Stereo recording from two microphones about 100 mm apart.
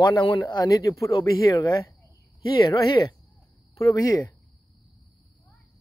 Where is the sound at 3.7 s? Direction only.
35° left (ahead or behind).